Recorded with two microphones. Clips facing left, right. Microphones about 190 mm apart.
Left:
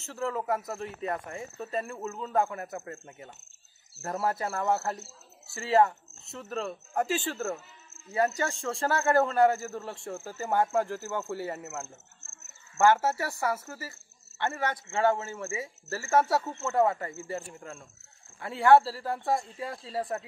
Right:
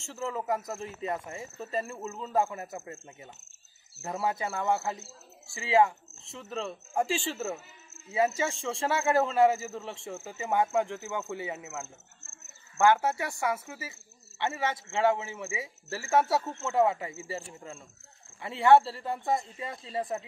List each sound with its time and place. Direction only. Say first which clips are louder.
0.0 s speech: left 2 dB; 5° right (ahead or behind)
4.0 s speech: left 1 dB; centre (ahead or behind)
13.0 s speech: left 1 dB; 5° left (ahead or behind)